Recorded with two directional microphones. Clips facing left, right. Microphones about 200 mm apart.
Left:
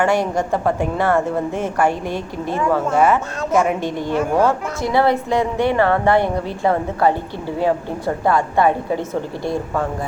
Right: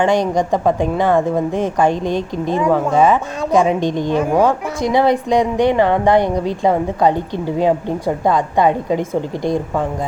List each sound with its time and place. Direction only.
0.0 s a woman's voice: 20° right (ahead or behind)